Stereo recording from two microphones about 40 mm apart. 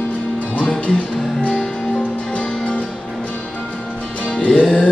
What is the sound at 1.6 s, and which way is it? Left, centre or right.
Music, centre.